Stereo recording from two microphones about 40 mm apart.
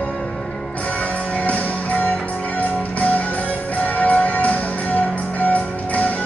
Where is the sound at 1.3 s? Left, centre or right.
Left.